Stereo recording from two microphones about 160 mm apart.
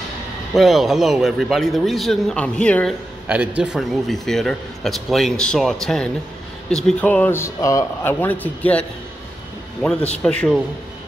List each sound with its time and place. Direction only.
0.6 s a man's voice: centre (ahead or behind)
3.3 s a man's voice: 10° right (ahead or behind)